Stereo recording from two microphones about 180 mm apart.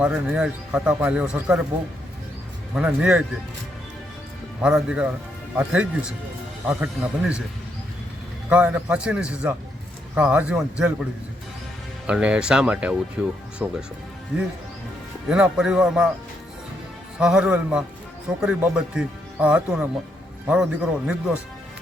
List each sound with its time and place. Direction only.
0.0 s speech: 5° right (ahead or behind)
2.7 s speech: 5° right (ahead or behind)
4.6 s speech: 5° right (ahead or behind)
8.4 s speech: 5° right (ahead or behind)
12.0 s speech: 5° right (ahead or behind)
15.3 s speech: 5° right (ahead or behind)
17.2 s speech: 5° right (ahead or behind)